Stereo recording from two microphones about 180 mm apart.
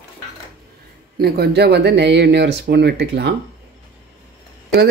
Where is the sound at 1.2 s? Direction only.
60° right (ahead or behind).